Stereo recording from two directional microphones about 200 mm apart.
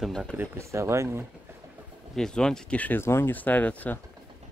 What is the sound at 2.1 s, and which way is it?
Speech, 5° left (ahead or behind).